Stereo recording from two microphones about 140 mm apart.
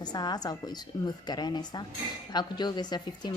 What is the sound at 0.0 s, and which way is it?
A woman's voice, 30° left (ahead or behind).